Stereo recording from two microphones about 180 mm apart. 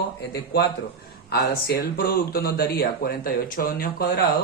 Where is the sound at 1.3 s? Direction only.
60° left (ahead or behind).